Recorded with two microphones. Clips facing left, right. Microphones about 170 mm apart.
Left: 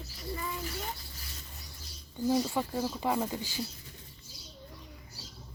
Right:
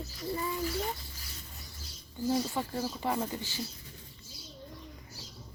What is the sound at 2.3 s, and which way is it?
Speech, 15° left (ahead or behind).